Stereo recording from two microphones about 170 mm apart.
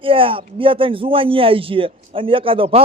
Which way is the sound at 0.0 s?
30° right (ahead or behind).